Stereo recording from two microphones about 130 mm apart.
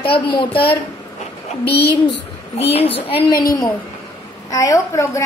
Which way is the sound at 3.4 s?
30° left (ahead or behind).